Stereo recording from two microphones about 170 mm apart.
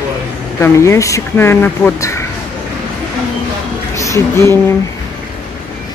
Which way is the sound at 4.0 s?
20° left (ahead or behind).